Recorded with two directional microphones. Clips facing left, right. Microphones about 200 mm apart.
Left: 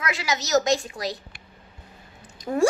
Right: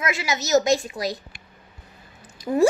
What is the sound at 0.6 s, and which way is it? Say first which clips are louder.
Speech: right 2 dB; 10° right (ahead or behind).